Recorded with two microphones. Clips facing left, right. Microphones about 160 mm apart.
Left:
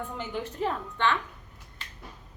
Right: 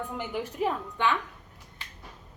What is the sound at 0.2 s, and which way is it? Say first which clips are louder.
A woman's voice: right 1 dB; 10° right (ahead or behind).